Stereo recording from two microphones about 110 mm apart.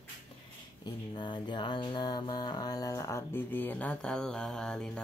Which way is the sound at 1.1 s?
45° left (ahead or behind).